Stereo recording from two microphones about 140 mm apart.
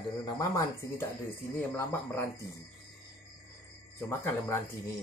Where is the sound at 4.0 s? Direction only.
20° left (ahead or behind).